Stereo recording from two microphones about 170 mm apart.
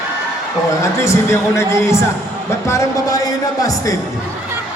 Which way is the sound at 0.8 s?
15° left (ahead or behind).